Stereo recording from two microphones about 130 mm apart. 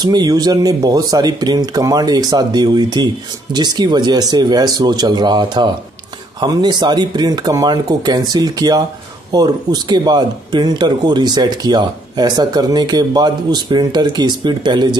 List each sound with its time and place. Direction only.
0.0 s speech: 30° right (ahead or behind)